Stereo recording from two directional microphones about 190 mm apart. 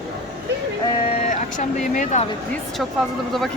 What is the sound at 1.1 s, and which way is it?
Speech, 35° left (ahead or behind).